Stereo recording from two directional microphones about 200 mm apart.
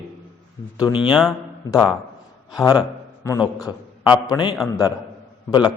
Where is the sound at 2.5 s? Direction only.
20° left (ahead or behind).